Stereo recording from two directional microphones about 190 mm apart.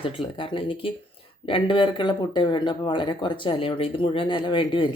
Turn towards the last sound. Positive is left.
turn(degrees=25)  # may be behind; listen again after turning